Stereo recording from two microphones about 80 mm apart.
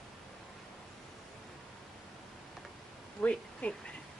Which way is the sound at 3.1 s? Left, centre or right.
Centre.